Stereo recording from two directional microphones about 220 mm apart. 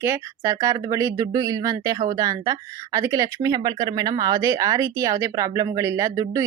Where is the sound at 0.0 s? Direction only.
10° right (ahead or behind).